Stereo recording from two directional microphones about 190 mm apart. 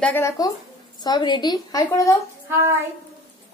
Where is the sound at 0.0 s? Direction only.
15° left (ahead or behind).